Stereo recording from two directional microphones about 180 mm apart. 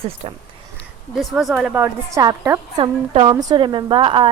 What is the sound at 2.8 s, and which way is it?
A woman's voice, 30° right (ahead or behind).